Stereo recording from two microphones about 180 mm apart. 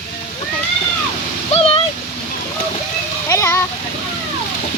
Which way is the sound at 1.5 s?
35° left (ahead or behind).